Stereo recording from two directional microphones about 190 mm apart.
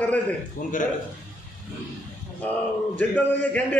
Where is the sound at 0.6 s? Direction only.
45° left (ahead or behind).